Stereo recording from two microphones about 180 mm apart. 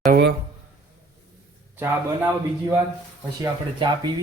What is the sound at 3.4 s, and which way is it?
Speech, 25° right (ahead or behind).